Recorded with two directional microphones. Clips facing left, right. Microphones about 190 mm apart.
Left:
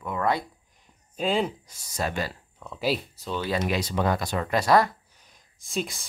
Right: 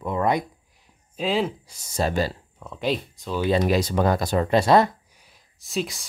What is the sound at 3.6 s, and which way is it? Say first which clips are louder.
Speech: right 5 dB; 40° right (ahead or behind).